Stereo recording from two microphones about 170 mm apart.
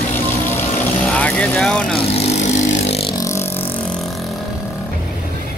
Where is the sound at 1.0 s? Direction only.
5° left (ahead or behind).